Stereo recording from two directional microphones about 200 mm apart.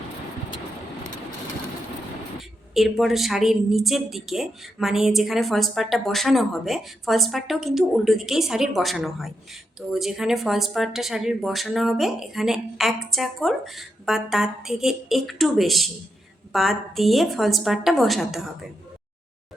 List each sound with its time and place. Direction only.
2.7 s a woman's voice: centre (ahead or behind)